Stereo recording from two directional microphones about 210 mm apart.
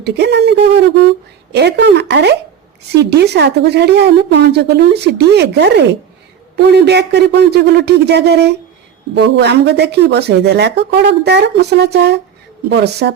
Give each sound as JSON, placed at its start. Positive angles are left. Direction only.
{"t": 0.0, "sound": "speech", "side_deg": -55}